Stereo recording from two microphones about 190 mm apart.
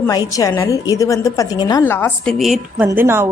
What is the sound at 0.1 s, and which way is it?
Speech, 20° left (ahead or behind).